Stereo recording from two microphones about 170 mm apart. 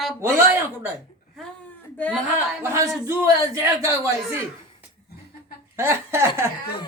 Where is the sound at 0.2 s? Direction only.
15° right (ahead or behind).